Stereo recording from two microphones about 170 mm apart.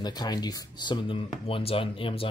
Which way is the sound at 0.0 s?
25° left (ahead or behind).